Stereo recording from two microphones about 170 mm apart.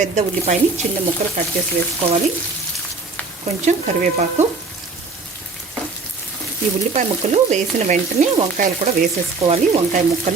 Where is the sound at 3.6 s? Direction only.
45° right (ahead or behind).